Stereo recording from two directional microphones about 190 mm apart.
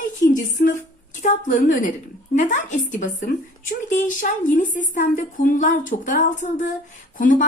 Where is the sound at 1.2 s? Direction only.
40° left (ahead or behind).